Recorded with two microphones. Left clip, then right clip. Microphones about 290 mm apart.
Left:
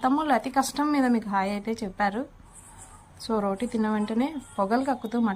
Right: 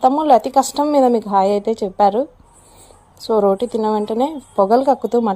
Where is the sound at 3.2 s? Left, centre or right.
Right.